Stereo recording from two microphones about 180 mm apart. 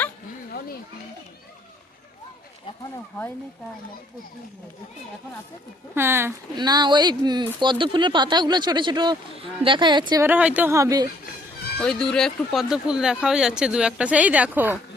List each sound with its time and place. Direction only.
5.9 s speech: 15° right (ahead or behind)
6.6 s speech: 25° right (ahead or behind)
10.2 s speech: 10° right (ahead or behind)
11.8 s speech: 5° left (ahead or behind)